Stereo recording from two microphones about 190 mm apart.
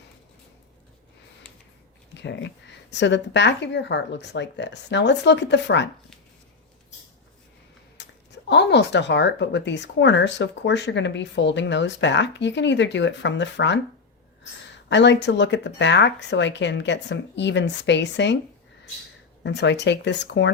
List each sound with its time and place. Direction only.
2.1 s speech: 65° left (ahead or behind)
8.0 s a sound: 65° left (ahead or behind)
8.4 s speech: 65° left (ahead or behind)
14.8 s speech: 70° left (ahead or behind)
19.4 s speech: 65° left (ahead or behind)